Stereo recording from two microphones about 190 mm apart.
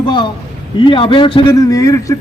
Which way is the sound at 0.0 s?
25° left (ahead or behind).